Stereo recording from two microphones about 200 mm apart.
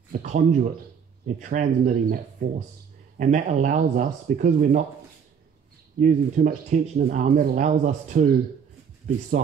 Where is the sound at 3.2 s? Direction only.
40° right (ahead or behind).